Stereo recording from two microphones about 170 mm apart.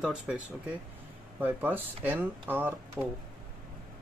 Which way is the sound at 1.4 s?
10° right (ahead or behind).